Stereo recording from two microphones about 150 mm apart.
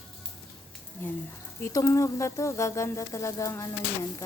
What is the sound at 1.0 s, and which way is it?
Speech, 15° left (ahead or behind).